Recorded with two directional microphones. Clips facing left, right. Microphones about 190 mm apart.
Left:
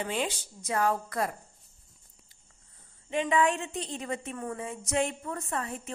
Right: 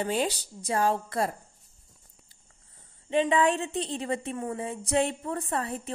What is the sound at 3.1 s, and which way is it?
A woman's voice, 30° right (ahead or behind).